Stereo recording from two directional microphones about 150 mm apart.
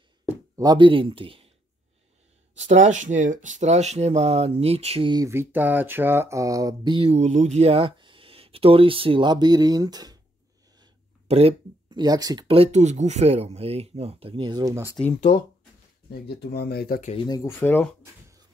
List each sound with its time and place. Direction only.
0.6 s speech: 30° right (ahead or behind)
2.6 s speech: 50° right (ahead or behind)
5.1 s a sound: 20° right (ahead or behind)
7.1 s speech: 45° right (ahead or behind); by 10.1 s 25° right (ahead or behind)
11.2 s speech: 45° right (ahead or behind)
11.9 s speech: 25° right (ahead or behind)
12.4 s speech: 45° right (ahead or behind); by 14.9 s 20° right (ahead or behind)
15.1 s speech: 55° left (ahead or behind)
16.1 s speech: 90° left
17.3 s speech: 20° left (ahead or behind)